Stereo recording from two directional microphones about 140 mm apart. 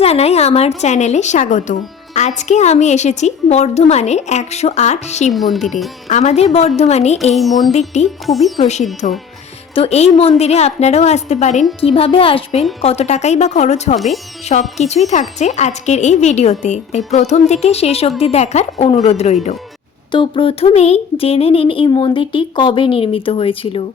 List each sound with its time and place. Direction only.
0.0 s a woman's voice: 50° left (ahead or behind)
5.3 s speech: centre (ahead or behind)
6.1 s a woman's voice: 55° left (ahead or behind)
7.3 s speech: centre (ahead or behind)
7.7 s speech: 55° left (ahead or behind)
8.3 s speech: centre (ahead or behind)
9.0 s a woman's voice: 55° left (ahead or behind)
11.8 s a woman's voice: 45° left (ahead or behind)
20.1 s speech: 35° left (ahead or behind)